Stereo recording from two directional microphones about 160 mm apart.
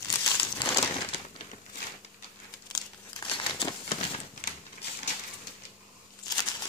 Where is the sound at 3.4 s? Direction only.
30° left (ahead or behind).